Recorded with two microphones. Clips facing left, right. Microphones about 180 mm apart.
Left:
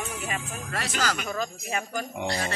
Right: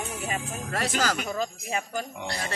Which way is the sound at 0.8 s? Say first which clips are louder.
Right 3 dB; 45° right (ahead or behind).